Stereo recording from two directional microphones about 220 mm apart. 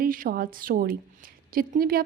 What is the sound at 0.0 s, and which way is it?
A woman's voice, 40° right (ahead or behind).